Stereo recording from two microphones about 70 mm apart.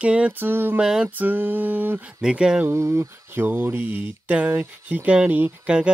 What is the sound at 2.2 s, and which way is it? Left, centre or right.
Speech, centre.